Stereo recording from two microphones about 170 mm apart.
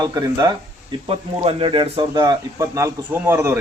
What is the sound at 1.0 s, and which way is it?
Speech, 35° right (ahead or behind).